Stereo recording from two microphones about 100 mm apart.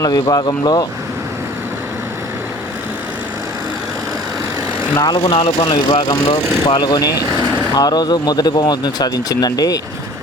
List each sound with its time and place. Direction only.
0.0 s speech: 40° left (ahead or behind)
5.0 s speech: 45° left (ahead or behind)
5.3 s speech: 70° left (ahead or behind); by 6.0 s 85° left
6.0 s speech: 40° left (ahead or behind)